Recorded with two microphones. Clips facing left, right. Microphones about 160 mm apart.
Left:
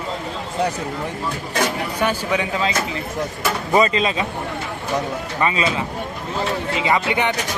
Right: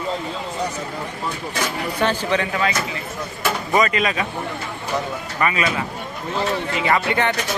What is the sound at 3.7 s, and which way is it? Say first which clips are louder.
Speech: left 2 dB; 30° left (ahead or behind).